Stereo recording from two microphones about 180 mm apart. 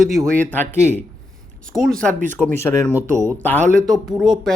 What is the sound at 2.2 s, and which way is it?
Speech, 45° right (ahead or behind).